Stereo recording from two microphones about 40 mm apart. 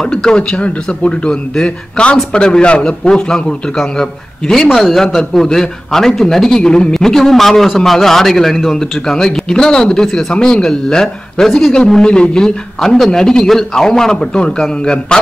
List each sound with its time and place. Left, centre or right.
0.1 s a man's voice: centre
0.4 s a man's voice: left
12.8 s a man's voice: centre